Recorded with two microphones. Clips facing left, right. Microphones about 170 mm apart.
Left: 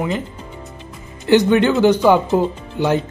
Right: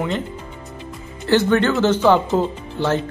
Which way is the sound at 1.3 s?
15° left (ahead or behind).